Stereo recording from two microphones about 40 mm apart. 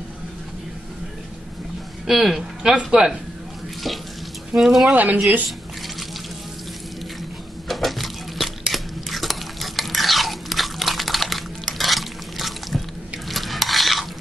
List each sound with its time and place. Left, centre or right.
2.0 s speech: centre
2.6 s speech: right
4.6 s speech: centre
4.9 s speech: right
7.6 s dishes: centre
13.3 s stir: centre